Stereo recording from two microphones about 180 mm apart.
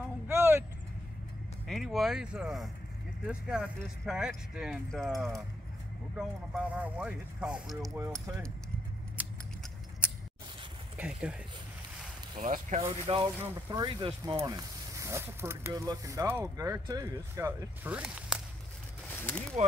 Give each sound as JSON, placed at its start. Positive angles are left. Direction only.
{"t": 0.3, "sound": "vehicle", "side_deg": -15}
{"t": 1.7, "sound": "speech", "side_deg": 0}
{"t": 6.1, "sound": "speech", "side_deg": -5}
{"t": 7.9, "sound": "speech", "side_deg": -15}
{"t": 11.0, "sound": "speech", "side_deg": -5}
{"t": 12.4, "sound": "speech", "side_deg": -45}
{"t": 13.1, "sound": "speech", "side_deg": -30}
{"t": 19.0, "sound": "a sound", "side_deg": 5}